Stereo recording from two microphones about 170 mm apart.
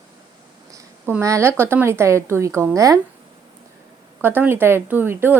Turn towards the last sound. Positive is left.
turn(degrees=-15)  # may be behind; listen again after turning